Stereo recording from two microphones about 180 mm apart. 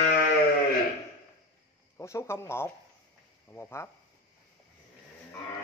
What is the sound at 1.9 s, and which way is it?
Speech, 15° left (ahead or behind).